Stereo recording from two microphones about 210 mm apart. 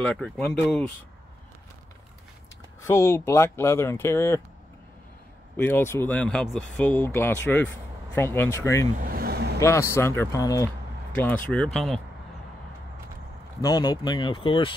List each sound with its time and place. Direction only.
0.0 s speech: 5° left (ahead or behind)
2.8 s speech: 15° left (ahead or behind)
5.6 s speech: 10° left (ahead or behind)
9.0 s vehicle: 45° right (ahead or behind)
9.6 s speech: 15° left (ahead or behind)
13.6 s speech: 20° left (ahead or behind)